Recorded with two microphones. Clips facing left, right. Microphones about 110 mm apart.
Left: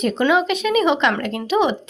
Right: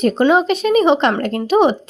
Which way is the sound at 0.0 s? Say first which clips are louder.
Right 4 dB; 40° right (ahead or behind).